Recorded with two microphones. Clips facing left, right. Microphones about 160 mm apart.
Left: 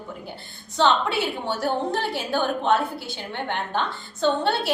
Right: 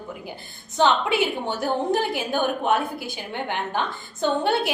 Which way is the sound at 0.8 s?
15° right (ahead or behind).